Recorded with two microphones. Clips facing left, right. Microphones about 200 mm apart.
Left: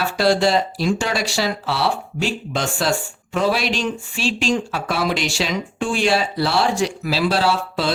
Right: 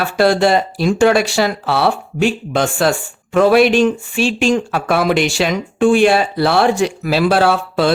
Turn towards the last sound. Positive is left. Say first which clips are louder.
# right 6 dB
turn(degrees=-55)  # may be behind; listen again after turning